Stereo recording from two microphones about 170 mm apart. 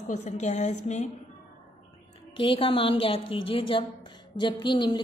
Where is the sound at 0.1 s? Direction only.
40° left (ahead or behind).